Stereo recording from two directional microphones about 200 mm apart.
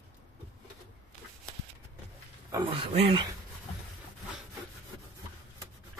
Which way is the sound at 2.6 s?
30° right (ahead or behind).